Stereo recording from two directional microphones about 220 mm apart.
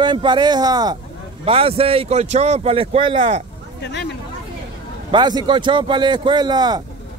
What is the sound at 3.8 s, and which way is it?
Speech, 50° left (ahead or behind).